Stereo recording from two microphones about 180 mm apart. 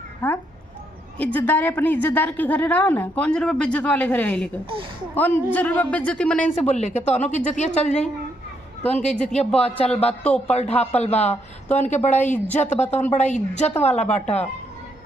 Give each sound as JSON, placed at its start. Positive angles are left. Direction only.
{"t": 0.2, "sound": "a woman's voice", "side_deg": 10}
{"t": 6.4, "sound": "a woman's voice", "side_deg": 40}
{"t": 9.1, "sound": "speech", "side_deg": 5}
{"t": 9.6, "sound": "a woman's voice", "side_deg": 35}
{"t": 10.2, "sound": "speech", "side_deg": 5}
{"t": 10.5, "sound": "a woman's voice", "side_deg": 35}
{"t": 12.1, "sound": "a woman's voice", "side_deg": 10}
{"t": 12.5, "sound": "a woman's voice", "side_deg": 40}